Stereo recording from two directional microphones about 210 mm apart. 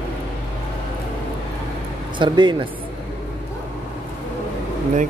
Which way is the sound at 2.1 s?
20° right (ahead or behind).